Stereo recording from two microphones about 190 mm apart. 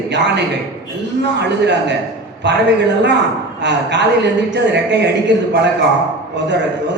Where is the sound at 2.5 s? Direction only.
65° right (ahead or behind).